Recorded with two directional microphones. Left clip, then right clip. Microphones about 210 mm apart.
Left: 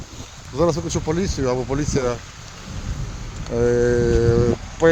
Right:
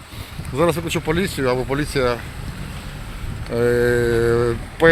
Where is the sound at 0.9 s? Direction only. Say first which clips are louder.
Right 2 dB; 10° left (ahead or behind).